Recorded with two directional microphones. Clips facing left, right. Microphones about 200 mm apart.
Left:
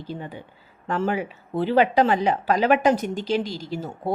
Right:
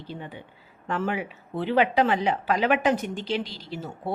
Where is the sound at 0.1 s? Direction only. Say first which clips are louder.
Left 4 dB; 40° left (ahead or behind).